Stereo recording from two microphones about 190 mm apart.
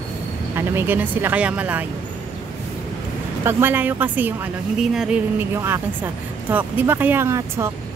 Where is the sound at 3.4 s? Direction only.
10° right (ahead or behind).